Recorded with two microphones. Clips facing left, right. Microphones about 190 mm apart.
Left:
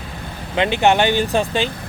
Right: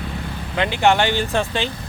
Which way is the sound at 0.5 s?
20° left (ahead or behind).